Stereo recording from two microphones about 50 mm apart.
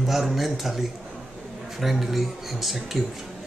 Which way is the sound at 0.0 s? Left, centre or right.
Centre.